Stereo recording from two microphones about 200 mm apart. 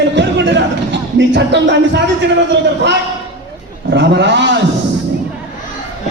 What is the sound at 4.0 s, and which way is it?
Speech, 60° right (ahead or behind).